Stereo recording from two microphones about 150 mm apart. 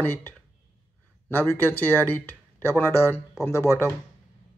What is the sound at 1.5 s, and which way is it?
Speech, 15° left (ahead or behind).